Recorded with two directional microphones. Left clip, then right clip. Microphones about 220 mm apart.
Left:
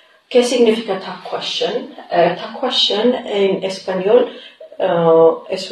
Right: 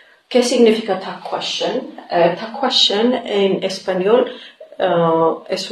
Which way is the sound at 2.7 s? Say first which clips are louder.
Even; 25° right (ahead or behind).